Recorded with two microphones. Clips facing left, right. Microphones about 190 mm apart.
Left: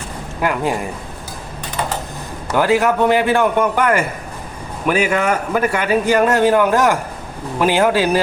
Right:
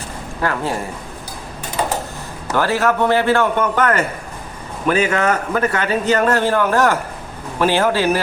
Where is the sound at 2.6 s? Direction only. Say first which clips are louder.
Left 2 dB; 15° left (ahead or behind).